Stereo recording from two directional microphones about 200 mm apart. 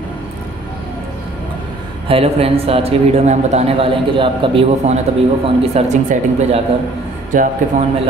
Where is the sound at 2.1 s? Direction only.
30° right (ahead or behind).